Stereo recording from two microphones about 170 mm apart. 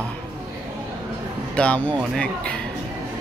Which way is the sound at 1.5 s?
5° left (ahead or behind).